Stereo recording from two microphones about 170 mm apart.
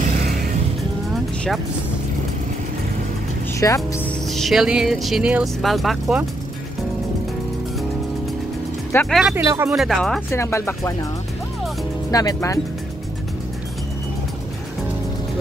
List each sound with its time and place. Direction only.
0.2 s music: 70° right (ahead or behind)
1.1 s vehicle: centre (ahead or behind)
3.5 s speech: 20° left (ahead or behind)
4.1 s speech: centre (ahead or behind)
8.9 s speech: 15° left (ahead or behind)
9.3 s speech: 15° right (ahead or behind)
9.8 s speech: centre (ahead or behind)
10.3 s speech: 15° left (ahead or behind)
12.1 s speech: 20° left (ahead or behind)